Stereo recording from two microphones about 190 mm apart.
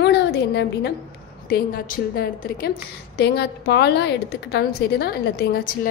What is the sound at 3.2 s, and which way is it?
A woman's voice, 60° left (ahead or behind).